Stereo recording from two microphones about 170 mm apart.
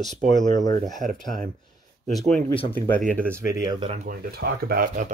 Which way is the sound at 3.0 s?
50° right (ahead or behind).